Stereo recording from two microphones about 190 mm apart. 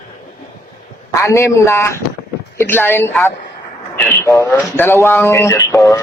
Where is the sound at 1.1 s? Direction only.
15° left (ahead or behind).